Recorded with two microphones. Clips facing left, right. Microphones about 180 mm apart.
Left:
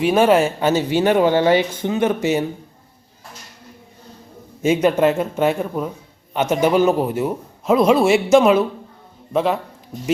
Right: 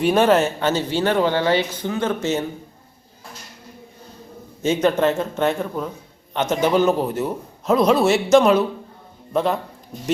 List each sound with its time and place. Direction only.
0.0 s a man's voice: 5° left (ahead or behind)
4.6 s a man's voice: 10° left (ahead or behind)